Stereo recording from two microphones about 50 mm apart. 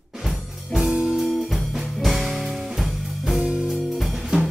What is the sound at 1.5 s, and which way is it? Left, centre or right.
Music, centre.